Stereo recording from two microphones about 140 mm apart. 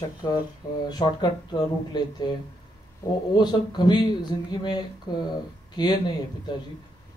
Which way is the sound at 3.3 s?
30° left (ahead or behind).